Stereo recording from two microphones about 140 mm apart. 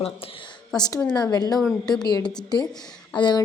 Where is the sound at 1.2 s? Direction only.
30° left (ahead or behind).